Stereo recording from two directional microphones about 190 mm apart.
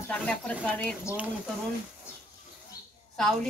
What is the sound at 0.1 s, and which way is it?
Speech, 5° left (ahead or behind).